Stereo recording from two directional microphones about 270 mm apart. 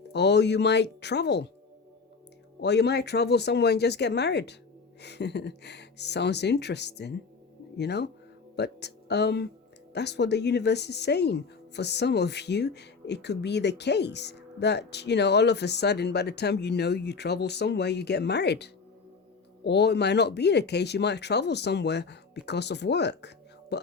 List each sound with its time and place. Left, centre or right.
0.1 s speech: left
2.6 s speech: left